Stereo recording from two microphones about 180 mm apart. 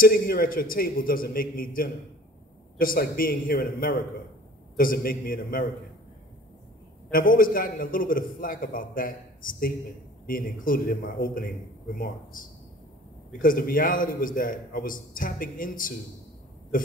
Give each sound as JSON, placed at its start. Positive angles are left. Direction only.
{"t": 0.0, "sound": "a man's voice", "side_deg": 55}
{"t": 7.1, "sound": "a man's voice", "side_deg": 50}